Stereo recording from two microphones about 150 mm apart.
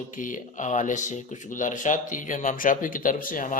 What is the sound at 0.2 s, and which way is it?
Speech, 60° left (ahead or behind).